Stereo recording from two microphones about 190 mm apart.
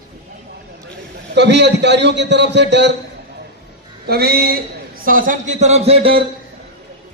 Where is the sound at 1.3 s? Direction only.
65° right (ahead or behind).